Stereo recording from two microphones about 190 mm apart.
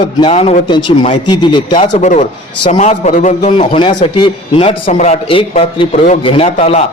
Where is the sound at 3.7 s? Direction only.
25° left (ahead or behind).